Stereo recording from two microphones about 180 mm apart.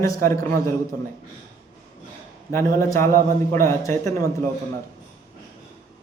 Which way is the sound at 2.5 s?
15° left (ahead or behind).